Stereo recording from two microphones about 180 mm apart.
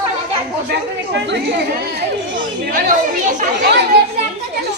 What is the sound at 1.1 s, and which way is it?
Speech, 70° right (ahead or behind).